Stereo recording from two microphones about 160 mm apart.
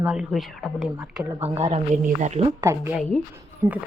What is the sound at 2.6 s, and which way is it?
Speech, 20° right (ahead or behind).